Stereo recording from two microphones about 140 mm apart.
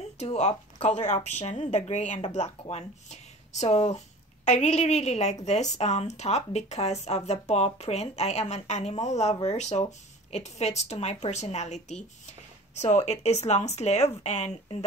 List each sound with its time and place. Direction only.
0.2 s a woman's voice: 55° left (ahead or behind)